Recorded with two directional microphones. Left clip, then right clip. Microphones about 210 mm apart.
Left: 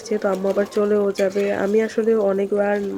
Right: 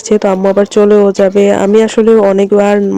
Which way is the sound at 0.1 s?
35° right (ahead or behind).